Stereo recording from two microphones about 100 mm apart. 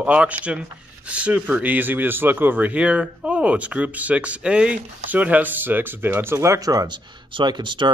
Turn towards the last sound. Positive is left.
turn(degrees=-50)  # may be behind; listen again after turning